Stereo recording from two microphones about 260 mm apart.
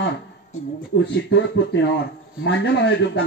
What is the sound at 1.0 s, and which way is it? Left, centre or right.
A man's voice, left.